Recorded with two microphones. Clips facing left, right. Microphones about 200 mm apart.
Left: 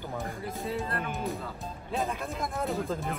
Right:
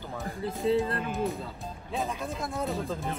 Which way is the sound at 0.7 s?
25° right (ahead or behind).